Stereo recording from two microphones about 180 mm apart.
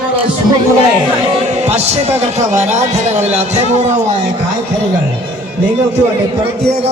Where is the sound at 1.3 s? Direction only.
40° right (ahead or behind).